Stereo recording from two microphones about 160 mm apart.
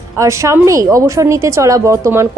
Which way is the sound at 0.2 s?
20° right (ahead or behind).